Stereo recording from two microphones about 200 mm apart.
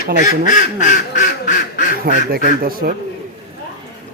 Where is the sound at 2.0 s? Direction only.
45° right (ahead or behind).